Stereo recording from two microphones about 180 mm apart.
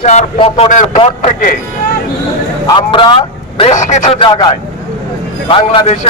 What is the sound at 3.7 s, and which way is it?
Speech, 40° left (ahead or behind).